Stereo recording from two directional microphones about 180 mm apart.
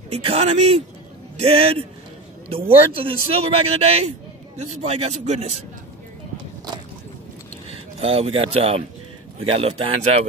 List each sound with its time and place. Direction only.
0.1 s a man's voice: 35° right (ahead or behind)
7.7 s a man's voice: 30° right (ahead or behind)